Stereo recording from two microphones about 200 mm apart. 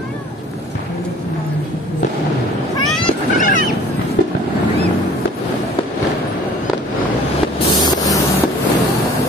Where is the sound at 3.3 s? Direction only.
40° left (ahead or behind).